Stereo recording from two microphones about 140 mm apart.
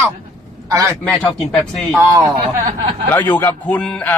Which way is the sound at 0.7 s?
20° right (ahead or behind).